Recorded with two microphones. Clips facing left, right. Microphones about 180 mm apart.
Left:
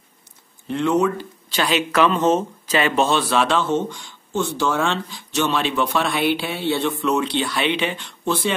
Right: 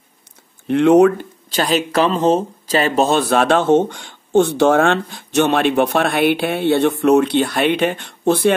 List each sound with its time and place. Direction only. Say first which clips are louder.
0.7 s speech: right 9 dB; 65° right (ahead or behind)
1.5 s speech: right 3 dB; 40° right (ahead or behind); by 8.5 s 55° right (ahead or behind)